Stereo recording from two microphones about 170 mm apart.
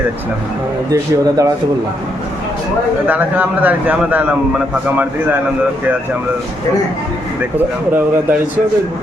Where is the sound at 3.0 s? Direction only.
10° right (ahead or behind).